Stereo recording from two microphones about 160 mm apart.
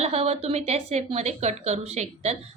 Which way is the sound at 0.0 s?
40° right (ahead or behind).